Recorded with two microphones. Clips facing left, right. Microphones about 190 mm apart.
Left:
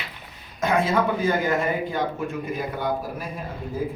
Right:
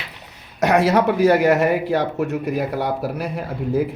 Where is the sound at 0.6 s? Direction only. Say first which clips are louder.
Right 5 dB; 75° right (ahead or behind).